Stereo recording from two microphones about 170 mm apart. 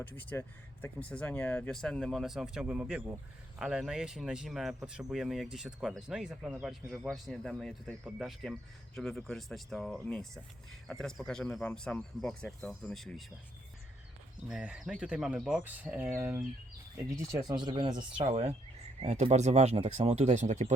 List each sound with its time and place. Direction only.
0.0 s speech: 10° left (ahead or behind)
14.4 s speech: 5° right (ahead or behind); by 18.0 s 25° right (ahead or behind)
18.2 s speech: 40° right (ahead or behind)